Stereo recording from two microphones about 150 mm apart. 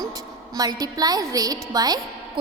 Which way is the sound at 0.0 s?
25° right (ahead or behind).